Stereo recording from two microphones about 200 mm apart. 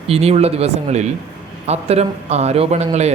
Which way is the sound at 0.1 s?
30° right (ahead or behind).